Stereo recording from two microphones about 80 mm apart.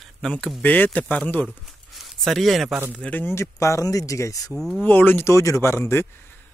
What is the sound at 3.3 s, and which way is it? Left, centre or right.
Speech, left.